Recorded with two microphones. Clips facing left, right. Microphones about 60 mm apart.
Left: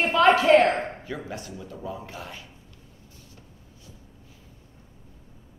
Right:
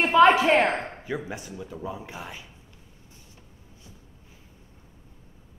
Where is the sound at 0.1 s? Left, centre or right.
Centre.